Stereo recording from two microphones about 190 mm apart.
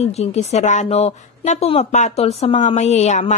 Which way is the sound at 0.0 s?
35° left (ahead or behind).